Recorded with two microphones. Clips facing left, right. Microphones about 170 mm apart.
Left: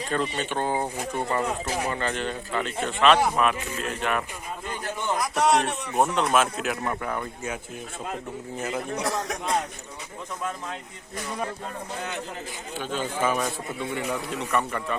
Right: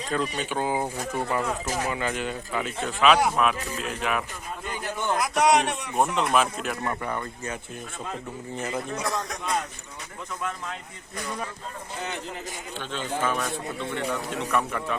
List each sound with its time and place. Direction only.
0.1 s speech: centre (ahead or behind)
0.9 s speech: 20° left (ahead or behind)
1.3 s speech: 5° left (ahead or behind)
1.9 s speech: 5° right (ahead or behind)
5.2 s a man's voice: centre (ahead or behind)
9.0 s a man's voice: 80° left
12.8 s speech: 10° left (ahead or behind)